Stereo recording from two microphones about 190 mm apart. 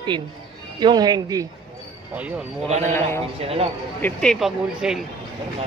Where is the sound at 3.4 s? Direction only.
30° right (ahead or behind).